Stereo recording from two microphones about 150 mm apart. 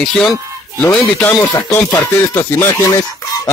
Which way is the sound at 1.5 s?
20° left (ahead or behind).